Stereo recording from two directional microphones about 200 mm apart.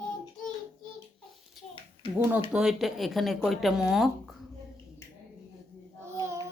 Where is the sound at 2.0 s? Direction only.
25° left (ahead or behind).